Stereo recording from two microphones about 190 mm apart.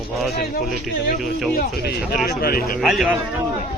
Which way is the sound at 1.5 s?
50° left (ahead or behind).